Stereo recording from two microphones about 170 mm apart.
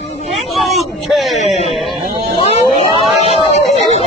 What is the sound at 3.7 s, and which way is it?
Speech, 40° left (ahead or behind).